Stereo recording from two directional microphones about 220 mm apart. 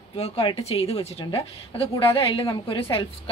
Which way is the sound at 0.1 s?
25° left (ahead or behind).